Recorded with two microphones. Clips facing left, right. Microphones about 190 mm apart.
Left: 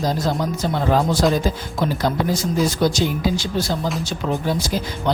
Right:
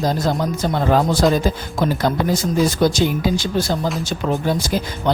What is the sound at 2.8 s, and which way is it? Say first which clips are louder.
Speech: right 2 dB; 55° right (ahead or behind).